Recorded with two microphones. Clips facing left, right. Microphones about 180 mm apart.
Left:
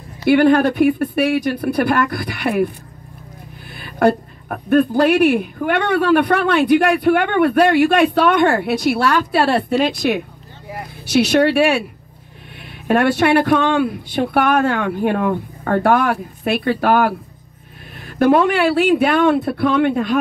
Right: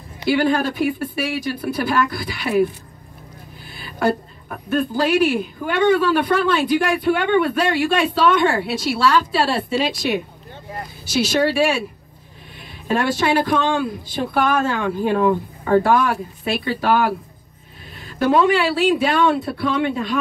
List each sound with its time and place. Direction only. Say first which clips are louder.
0.2 s speech: left 6 dB; 60° left (ahead or behind)
3.7 s speech: left 5 dB; 55° left (ahead or behind)
12.8 s speech: left 5 dB; 60° left (ahead or behind)